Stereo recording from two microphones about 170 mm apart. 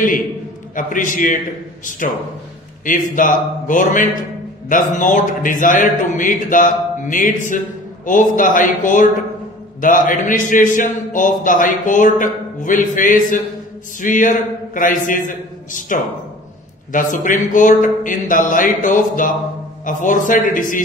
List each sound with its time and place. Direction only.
0.7 s a man's voice: 50° left (ahead or behind)